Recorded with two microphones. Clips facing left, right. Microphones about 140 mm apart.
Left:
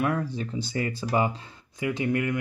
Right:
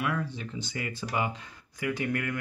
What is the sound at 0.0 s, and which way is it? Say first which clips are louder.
Speech: left 5 dB; 40° left (ahead or behind).